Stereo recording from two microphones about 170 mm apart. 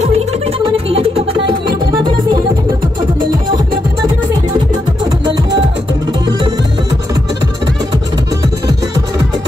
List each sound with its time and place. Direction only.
0.0 s music: 35° right (ahead or behind)